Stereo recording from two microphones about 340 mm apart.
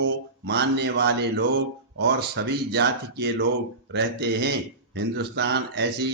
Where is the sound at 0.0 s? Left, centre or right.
Right.